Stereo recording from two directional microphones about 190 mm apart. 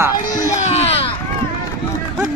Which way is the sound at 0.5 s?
35° left (ahead or behind).